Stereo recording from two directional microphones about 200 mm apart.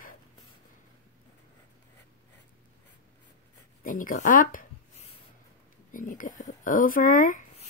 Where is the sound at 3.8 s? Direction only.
40° left (ahead or behind).